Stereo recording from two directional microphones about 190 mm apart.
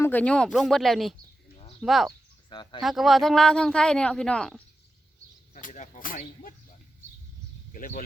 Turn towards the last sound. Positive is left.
turn(degrees=45)  # may be behind; listen again after turning